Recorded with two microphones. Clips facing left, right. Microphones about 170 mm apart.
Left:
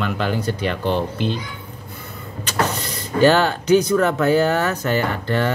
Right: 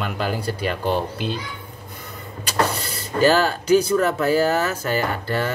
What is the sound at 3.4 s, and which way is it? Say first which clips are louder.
Speech: left 1 dB; 30° right (ahead or behind).